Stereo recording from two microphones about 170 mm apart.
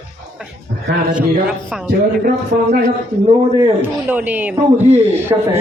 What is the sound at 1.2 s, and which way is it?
Speech, 5° right (ahead or behind).